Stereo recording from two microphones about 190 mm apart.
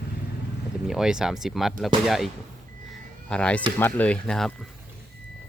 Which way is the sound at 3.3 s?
5° left (ahead or behind).